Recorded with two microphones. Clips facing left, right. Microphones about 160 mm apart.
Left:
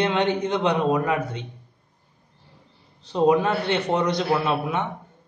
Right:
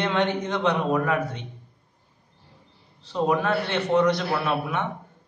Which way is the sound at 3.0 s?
20° left (ahead or behind).